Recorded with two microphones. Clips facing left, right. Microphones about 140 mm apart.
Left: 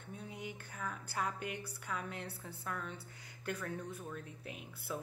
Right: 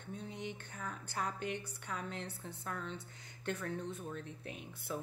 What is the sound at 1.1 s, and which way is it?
Speech, 30° right (ahead or behind).